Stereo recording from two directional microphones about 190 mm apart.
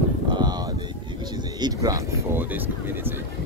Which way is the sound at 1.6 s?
20° right (ahead or behind).